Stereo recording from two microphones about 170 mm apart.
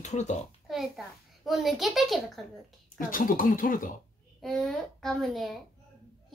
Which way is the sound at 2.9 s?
55° left (ahead or behind).